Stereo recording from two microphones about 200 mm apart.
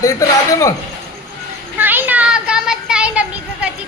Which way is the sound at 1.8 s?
10° right (ahead or behind).